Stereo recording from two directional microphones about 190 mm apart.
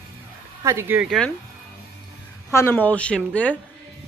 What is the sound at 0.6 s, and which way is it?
Speech, 15° right (ahead or behind).